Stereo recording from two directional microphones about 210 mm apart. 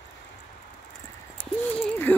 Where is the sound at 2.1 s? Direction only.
5° left (ahead or behind).